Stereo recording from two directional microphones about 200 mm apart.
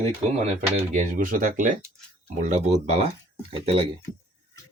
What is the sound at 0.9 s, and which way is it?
Speech, 40° right (ahead or behind).